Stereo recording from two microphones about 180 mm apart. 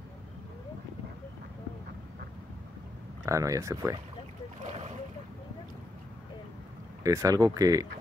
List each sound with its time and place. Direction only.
3.3 s speech: 15° right (ahead or behind)
4.6 s boat: 40° right (ahead or behind)
7.0 s speech: 15° right (ahead or behind)